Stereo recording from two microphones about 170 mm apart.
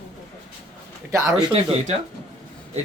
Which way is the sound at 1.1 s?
20° right (ahead or behind).